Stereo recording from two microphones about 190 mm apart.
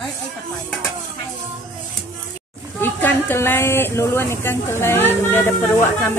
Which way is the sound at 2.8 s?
10° left (ahead or behind).